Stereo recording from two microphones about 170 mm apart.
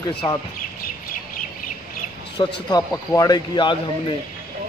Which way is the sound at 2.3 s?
25° left (ahead or behind).